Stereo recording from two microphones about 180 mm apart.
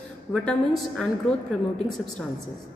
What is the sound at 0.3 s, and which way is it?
A woman's voice, 5° left (ahead or behind).